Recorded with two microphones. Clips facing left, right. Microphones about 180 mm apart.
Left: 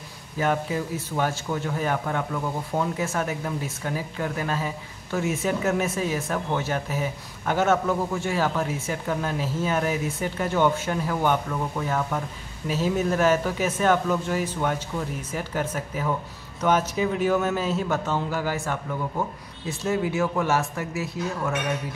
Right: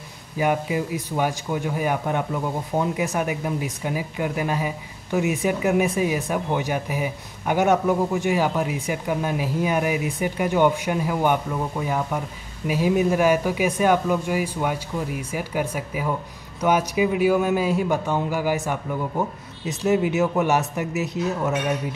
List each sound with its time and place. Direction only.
0.4 s a man's voice: 15° right (ahead or behind)